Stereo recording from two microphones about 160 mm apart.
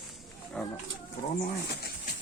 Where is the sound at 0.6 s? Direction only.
5° left (ahead or behind).